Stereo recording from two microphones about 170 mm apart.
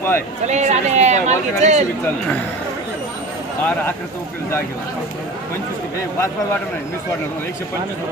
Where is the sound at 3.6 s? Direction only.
10° left (ahead or behind).